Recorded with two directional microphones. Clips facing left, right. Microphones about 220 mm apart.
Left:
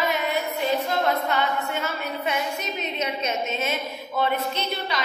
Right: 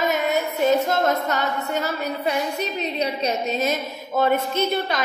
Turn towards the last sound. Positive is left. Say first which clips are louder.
# right 6 dB
turn(degrees=-50)  # may be behind; listen again after turning